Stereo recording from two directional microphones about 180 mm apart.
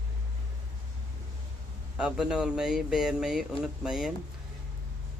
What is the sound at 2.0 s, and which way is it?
Speech, 5° right (ahead or behind).